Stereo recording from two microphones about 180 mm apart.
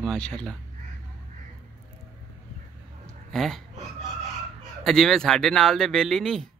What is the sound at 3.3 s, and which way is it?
Speech, centre (ahead or behind).